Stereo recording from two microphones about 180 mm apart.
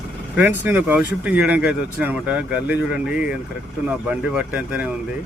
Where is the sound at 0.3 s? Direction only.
10° right (ahead or behind).